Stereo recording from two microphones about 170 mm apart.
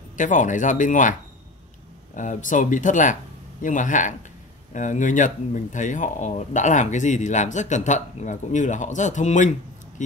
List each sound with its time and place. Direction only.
0.2 s speech: 50° left (ahead or behind)
2.1 s speech: 50° left (ahead or behind)